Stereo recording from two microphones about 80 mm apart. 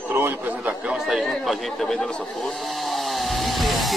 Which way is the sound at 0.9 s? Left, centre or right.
Centre.